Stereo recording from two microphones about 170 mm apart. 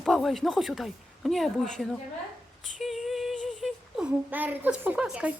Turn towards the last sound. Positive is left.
turn(degrees=-5)  # may be behind; listen again after turning